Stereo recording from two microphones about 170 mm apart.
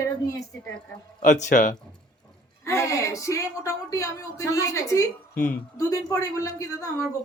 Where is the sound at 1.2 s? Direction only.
50° left (ahead or behind).